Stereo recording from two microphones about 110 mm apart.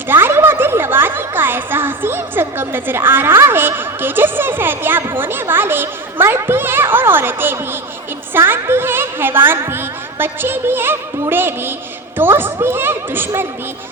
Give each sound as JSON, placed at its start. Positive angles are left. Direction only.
{"t": 0.1, "sound": "a child's voice", "side_deg": -20}